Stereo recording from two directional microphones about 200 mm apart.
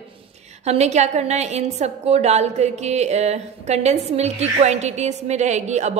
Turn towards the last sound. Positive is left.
turn(degrees=-35)  # may be behind; listen again after turning